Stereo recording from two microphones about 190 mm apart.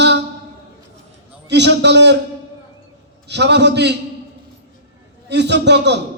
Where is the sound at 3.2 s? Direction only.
65° right (ahead or behind).